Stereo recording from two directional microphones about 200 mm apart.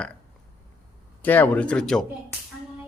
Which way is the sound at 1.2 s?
10° left (ahead or behind).